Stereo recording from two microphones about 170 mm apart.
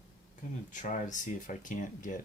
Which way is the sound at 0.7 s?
45° left (ahead or behind).